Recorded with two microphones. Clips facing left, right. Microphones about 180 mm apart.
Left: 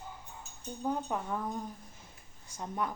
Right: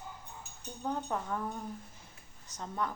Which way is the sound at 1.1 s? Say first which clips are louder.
Left 1 dB; 10° left (ahead or behind).